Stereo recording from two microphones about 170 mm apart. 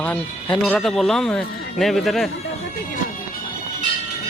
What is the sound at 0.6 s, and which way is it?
Speech, centre (ahead or behind).